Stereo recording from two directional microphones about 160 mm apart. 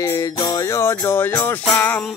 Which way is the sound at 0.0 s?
20° left (ahead or behind).